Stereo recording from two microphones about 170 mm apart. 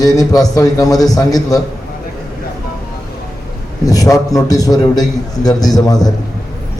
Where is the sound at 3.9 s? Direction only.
20° left (ahead or behind).